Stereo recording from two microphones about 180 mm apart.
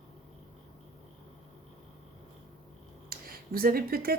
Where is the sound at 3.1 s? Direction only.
55° right (ahead or behind).